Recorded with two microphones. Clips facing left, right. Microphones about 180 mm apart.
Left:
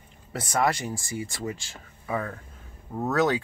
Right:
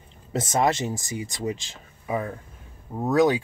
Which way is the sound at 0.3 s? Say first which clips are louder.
Right 3 dB; 20° right (ahead or behind).